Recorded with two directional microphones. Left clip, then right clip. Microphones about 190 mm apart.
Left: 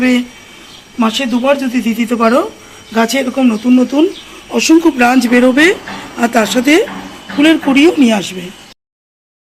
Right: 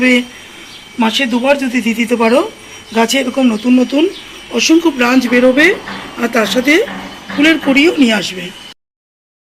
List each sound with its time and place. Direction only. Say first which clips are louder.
0.0 s speech: right 2 dB; 30° left (ahead or behind)
4.5 s speech: left 1 dB; 45° left (ahead or behind)
7.3 s speech: left 1 dB; 45° left (ahead or behind)